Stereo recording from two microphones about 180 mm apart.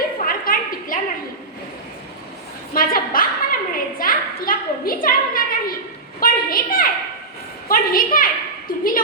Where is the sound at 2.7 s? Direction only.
50° left (ahead or behind).